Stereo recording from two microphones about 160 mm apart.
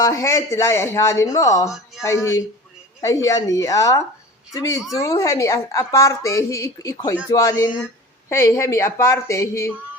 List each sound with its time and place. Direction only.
0.0 s a woman's voice: 20° left (ahead or behind)